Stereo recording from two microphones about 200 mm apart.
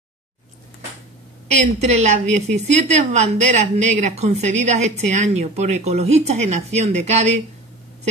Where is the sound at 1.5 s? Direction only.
35° right (ahead or behind).